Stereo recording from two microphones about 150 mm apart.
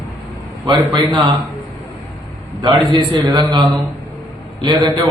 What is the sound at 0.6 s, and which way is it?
Speech, 35° right (ahead or behind).